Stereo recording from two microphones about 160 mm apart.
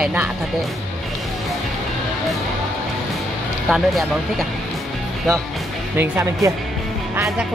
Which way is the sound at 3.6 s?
Centre (ahead or behind).